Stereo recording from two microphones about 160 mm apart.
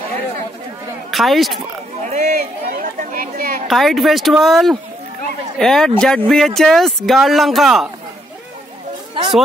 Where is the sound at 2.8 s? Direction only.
60° right (ahead or behind).